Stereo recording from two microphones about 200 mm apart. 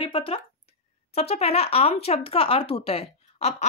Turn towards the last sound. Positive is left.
turn(degrees=30)  # may be behind; listen again after turning